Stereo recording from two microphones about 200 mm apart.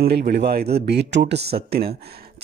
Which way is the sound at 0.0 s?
50° right (ahead or behind).